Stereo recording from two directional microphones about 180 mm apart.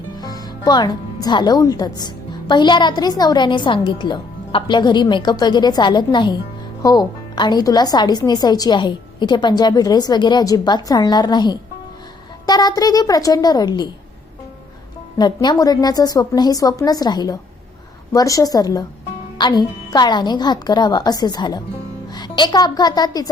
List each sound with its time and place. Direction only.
0.2 s a woman's voice: 20° left (ahead or behind)
15.2 s a woman's voice: 25° left (ahead or behind)